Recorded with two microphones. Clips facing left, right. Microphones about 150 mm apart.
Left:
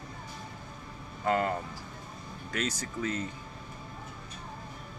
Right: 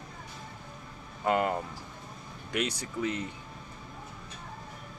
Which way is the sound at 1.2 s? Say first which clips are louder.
Right 1 dB; 20° right (ahead or behind).